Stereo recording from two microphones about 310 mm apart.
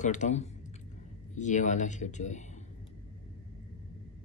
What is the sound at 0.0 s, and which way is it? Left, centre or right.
Speech, left.